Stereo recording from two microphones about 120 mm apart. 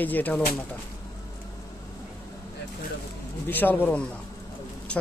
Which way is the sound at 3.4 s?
15° left (ahead or behind).